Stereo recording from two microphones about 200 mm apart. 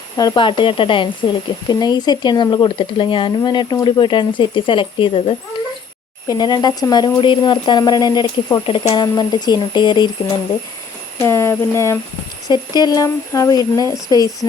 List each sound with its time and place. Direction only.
0.2 s speech: 20° left (ahead or behind)
6.2 s speech: 20° left (ahead or behind)
11.2 s speech: 10° left (ahead or behind)